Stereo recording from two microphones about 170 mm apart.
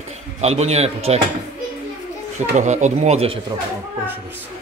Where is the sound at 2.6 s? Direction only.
45° right (ahead or behind).